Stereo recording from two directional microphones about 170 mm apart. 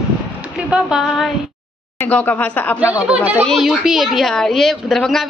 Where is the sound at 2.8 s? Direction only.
10° right (ahead or behind).